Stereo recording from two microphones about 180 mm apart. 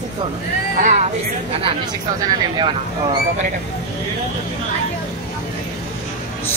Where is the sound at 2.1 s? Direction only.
25° right (ahead or behind).